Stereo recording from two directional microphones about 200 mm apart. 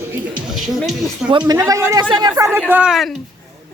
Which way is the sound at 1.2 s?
20° right (ahead or behind).